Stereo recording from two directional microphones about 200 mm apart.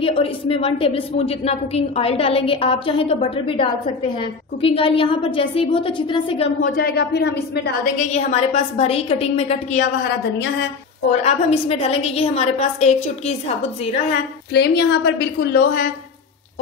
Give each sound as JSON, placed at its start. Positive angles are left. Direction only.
{"t": 0.0, "sound": "a woman's voice", "side_deg": 30}
{"t": 6.8, "sound": "a woman's voice", "side_deg": 50}
{"t": 8.1, "sound": "a woman's voice", "side_deg": 35}
{"t": 11.2, "sound": "a woman's voice", "side_deg": 30}
{"t": 14.5, "sound": "a woman's voice", "side_deg": 55}